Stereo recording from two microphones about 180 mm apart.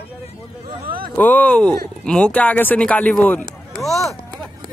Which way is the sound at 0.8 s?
55° right (ahead or behind).